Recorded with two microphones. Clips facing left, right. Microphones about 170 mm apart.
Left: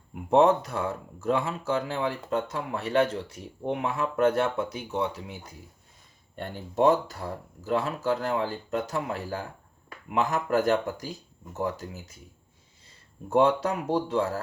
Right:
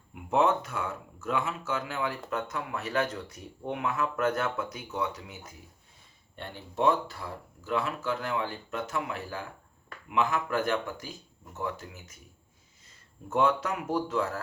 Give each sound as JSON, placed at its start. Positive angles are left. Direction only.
{"t": 0.1, "sound": "speech", "side_deg": 35}
{"t": 6.3, "sound": "speech", "side_deg": 45}
{"t": 13.3, "sound": "speech", "side_deg": 35}